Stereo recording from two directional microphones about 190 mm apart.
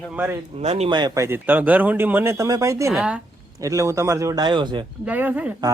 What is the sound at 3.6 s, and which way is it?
Speech, 15° right (ahead or behind).